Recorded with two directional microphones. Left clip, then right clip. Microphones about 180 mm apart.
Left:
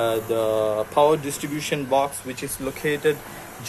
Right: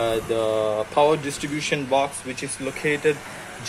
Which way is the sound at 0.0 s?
Centre (ahead or behind).